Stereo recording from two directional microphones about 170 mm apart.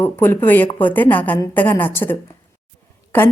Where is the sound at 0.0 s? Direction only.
10° left (ahead or behind).